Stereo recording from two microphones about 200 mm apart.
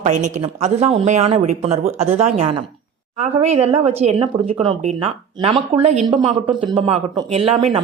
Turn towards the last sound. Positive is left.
turn(degrees=-25)  # may be behind; listen again after turning